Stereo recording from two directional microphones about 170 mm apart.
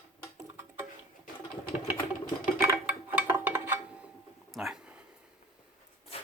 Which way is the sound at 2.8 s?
15° right (ahead or behind).